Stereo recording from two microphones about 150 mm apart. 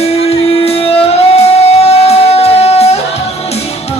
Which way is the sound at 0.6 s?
40° left (ahead or behind).